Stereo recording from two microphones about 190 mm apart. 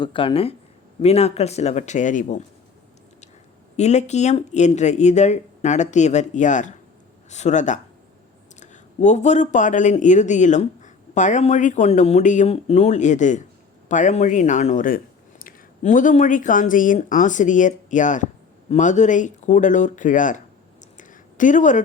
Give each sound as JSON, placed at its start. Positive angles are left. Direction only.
{"t": 0.0, "sound": "speech", "side_deg": 25}
{"t": 3.8, "sound": "speech", "side_deg": 35}
{"t": 21.0, "sound": "a sound", "side_deg": 45}